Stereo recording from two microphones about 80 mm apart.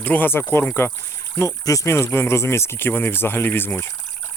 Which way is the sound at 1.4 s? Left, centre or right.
Left.